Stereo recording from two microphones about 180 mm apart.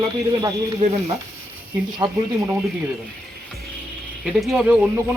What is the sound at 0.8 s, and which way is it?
Speech, 35° right (ahead or behind).